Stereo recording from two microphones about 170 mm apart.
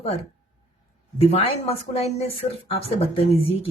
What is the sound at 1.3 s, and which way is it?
Speech, 35° left (ahead or behind).